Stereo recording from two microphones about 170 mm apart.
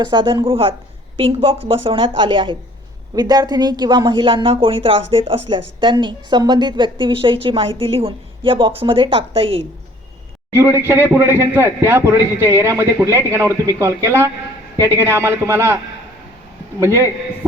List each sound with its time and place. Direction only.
0.0 s a woman's voice: 25° right (ahead or behind)
10.5 s a man's voice: 15° right (ahead or behind)
16.8 s a man's voice: 15° right (ahead or behind)